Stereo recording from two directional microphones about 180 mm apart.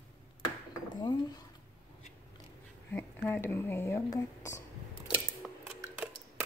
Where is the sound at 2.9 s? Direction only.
10° left (ahead or behind).